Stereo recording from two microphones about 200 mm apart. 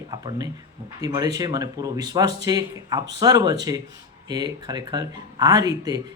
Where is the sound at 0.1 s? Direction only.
20° right (ahead or behind).